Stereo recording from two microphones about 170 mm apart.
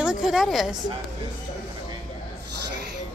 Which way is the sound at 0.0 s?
5° right (ahead or behind).